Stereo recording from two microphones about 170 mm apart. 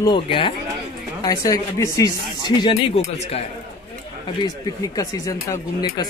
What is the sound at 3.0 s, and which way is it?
Speech, 40° left (ahead or behind).